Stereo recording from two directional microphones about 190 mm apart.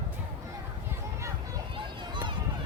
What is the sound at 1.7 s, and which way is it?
Run, 25° right (ahead or behind).